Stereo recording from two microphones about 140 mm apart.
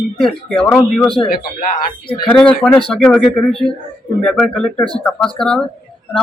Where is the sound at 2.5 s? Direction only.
40° left (ahead or behind).